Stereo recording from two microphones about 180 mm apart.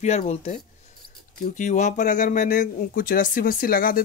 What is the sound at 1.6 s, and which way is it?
Speech, 40° left (ahead or behind).